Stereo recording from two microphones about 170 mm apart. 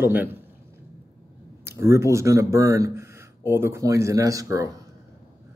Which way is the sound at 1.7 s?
15° right (ahead or behind).